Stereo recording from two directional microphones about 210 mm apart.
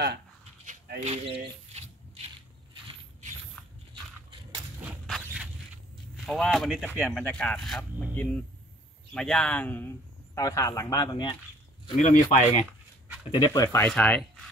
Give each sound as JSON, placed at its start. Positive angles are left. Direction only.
{"t": 0.7, "sound": "a sound", "side_deg": -35}
{"t": 2.7, "sound": "mechanisms", "side_deg": -30}
{"t": 4.8, "sound": "squeak", "side_deg": 0}
{"t": 6.2, "sound": "speech", "side_deg": 0}
{"t": 12.0, "sound": "speech", "side_deg": 35}
{"t": 13.3, "sound": "speech", "side_deg": 15}